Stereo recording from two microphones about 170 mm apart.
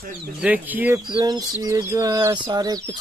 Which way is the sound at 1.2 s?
20° right (ahead or behind).